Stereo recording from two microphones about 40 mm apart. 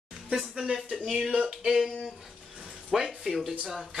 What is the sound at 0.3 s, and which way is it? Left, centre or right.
Speech, centre.